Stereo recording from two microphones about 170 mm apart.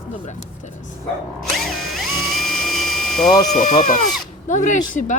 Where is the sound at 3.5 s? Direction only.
45° left (ahead or behind).